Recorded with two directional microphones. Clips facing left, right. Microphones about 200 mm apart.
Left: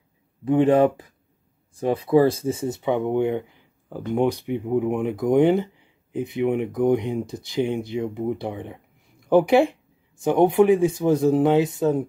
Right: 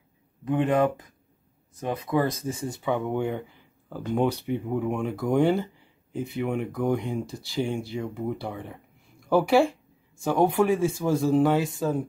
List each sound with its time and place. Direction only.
0.5 s speech: 30° left (ahead or behind)